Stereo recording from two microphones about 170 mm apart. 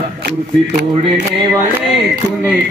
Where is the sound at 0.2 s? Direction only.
70° right (ahead or behind).